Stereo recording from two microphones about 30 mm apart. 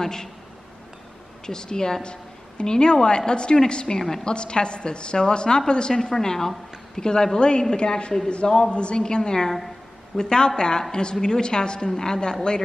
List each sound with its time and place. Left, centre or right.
0.0 s a man's voice: centre
1.4 s a woman's voice: left
9.0 s a woman's voice: left